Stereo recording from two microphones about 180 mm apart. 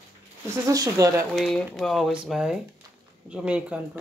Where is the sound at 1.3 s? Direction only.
Centre (ahead or behind).